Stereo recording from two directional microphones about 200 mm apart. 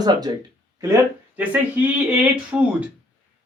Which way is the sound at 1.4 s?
10° right (ahead or behind).